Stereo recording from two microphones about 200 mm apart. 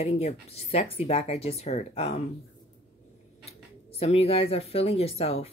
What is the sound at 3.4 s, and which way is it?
Speech, 30° left (ahead or behind).